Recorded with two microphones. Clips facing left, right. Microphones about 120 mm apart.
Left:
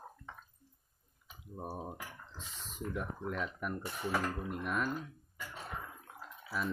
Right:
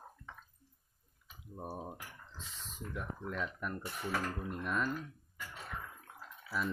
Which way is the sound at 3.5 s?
5° left (ahead or behind).